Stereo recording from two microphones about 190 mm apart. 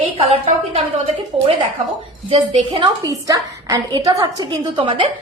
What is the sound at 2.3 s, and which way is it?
A woman's voice, 30° right (ahead or behind).